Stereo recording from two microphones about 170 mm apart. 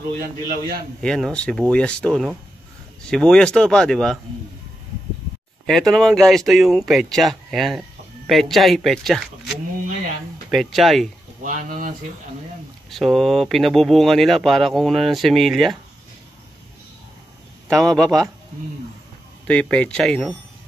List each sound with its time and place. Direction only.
1.0 s speech: 5° left (ahead or behind)
5.7 s speech: centre (ahead or behind)
11.4 s speech: 55° right (ahead or behind)
12.9 s speech: centre (ahead or behind)
17.6 s speech: 5° left (ahead or behind)
19.4 s speech: 10° left (ahead or behind)